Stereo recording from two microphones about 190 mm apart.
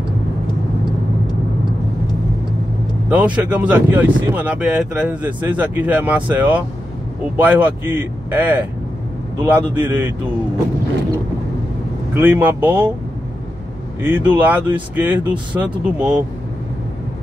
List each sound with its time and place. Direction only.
3.1 s speech: 5° right (ahead or behind)
12.1 s speech: 10° right (ahead or behind)
14.0 s speech: 10° right (ahead or behind)